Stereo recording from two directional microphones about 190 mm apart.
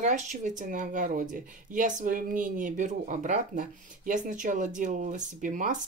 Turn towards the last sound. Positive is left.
turn(degrees=-40)  # may be behind; listen again after turning